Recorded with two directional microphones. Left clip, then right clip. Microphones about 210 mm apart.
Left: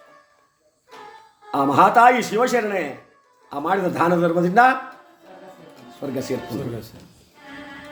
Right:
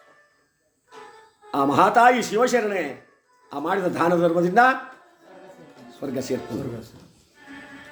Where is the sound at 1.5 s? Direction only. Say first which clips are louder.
Left 3 dB; 10° right (ahead or behind).